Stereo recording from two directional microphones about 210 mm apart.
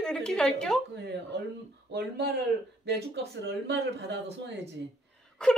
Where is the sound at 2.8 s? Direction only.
50° right (ahead or behind).